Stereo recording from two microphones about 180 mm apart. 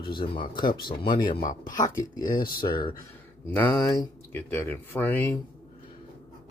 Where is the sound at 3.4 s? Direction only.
10° left (ahead or behind).